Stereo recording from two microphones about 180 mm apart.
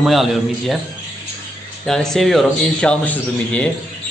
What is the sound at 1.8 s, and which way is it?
A man's voice, centre (ahead or behind).